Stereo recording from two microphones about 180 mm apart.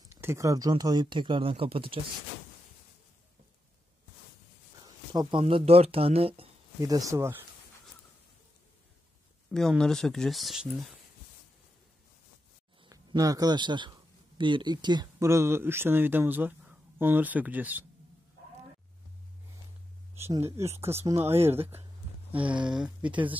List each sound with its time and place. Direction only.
0.1 s speech: 15° right (ahead or behind); by 2.0 s 30° right (ahead or behind)
5.1 s speech: 25° right (ahead or behind)
5.4 s speech: 35° right (ahead or behind)
6.8 s speech: 20° right (ahead or behind)
9.5 s speech: 5° left (ahead or behind)
12.8 s a man's voice: 20° right (ahead or behind)
20.4 s speech: 15° right (ahead or behind)
22.5 s speech: 25° right (ahead or behind)
23.0 s speech: 10° right (ahead or behind)